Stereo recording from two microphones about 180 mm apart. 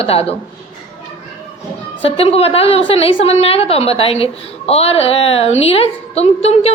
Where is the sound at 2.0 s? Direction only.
35° left (ahead or behind).